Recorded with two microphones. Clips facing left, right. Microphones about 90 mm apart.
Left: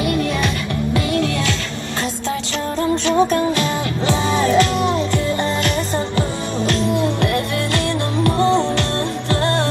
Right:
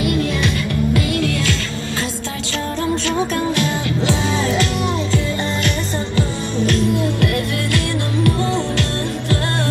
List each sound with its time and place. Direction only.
0.9 s music: 25° left (ahead or behind)
3.1 s music: 30° left (ahead or behind)
6.1 s music: 30° left (ahead or behind)